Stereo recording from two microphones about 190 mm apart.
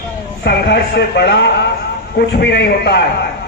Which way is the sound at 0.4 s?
65° left (ahead or behind).